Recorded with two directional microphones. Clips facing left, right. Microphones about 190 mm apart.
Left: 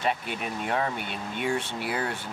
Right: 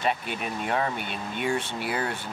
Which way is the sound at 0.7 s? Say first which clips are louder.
Right 1 dB; 15° right (ahead or behind).